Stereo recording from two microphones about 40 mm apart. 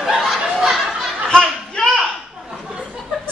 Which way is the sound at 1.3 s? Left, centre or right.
Centre.